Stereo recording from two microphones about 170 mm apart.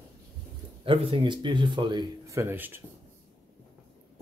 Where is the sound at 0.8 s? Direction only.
30° right (ahead or behind).